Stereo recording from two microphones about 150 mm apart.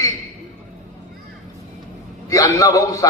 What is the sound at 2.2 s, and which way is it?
Speech, 20° left (ahead or behind).